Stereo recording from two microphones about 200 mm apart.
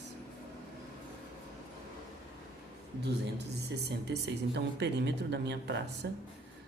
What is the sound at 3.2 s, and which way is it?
Speech, 60° right (ahead or behind).